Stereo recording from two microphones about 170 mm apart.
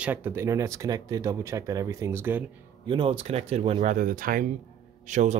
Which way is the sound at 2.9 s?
30° right (ahead or behind).